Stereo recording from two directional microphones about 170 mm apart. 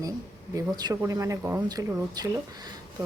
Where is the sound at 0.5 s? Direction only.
20° right (ahead or behind).